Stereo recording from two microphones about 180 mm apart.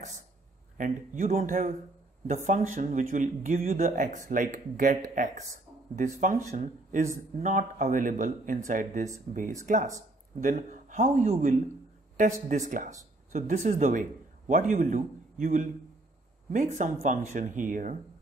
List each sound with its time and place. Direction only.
0.7 s speech: 50° right (ahead or behind)